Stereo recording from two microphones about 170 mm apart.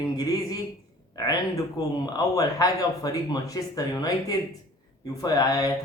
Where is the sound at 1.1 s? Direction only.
20° left (ahead or behind).